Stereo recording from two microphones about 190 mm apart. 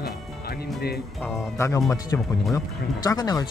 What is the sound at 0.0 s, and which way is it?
Music, 55° left (ahead or behind).